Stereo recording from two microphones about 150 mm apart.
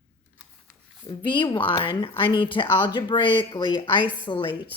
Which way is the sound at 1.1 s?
30° left (ahead or behind).